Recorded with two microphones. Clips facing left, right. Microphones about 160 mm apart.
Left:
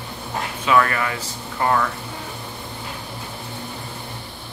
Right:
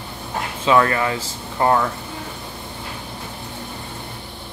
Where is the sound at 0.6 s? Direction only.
25° right (ahead or behind).